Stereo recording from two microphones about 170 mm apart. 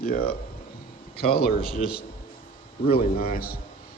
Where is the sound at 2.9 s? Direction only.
35° left (ahead or behind).